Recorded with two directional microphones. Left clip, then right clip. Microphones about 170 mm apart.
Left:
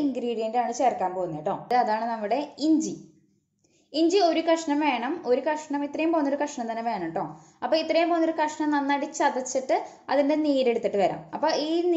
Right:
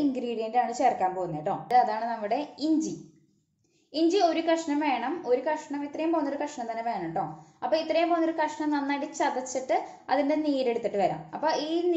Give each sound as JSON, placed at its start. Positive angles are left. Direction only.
{"t": 0.1, "sound": "a woman's voice", "side_deg": 15}
{"t": 1.7, "sound": "a woman's voice", "side_deg": 25}